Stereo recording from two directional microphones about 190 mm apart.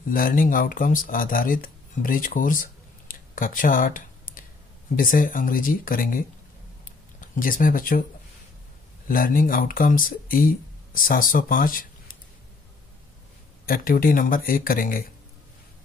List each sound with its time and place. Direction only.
0.1 s speech: 45° left (ahead or behind)
6.8 s a sound: 45° left (ahead or behind)
9.0 s speech: 45° left (ahead or behind)
13.7 s speech: 50° left (ahead or behind)